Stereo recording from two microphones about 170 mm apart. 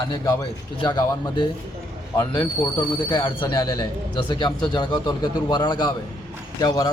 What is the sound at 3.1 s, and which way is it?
Speech, 30° left (ahead or behind).